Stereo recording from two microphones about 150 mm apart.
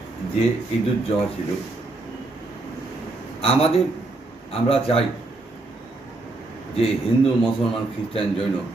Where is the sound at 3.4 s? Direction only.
40° left (ahead or behind).